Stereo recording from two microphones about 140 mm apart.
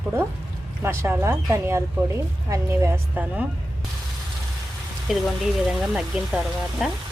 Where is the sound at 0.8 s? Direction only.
20° right (ahead or behind).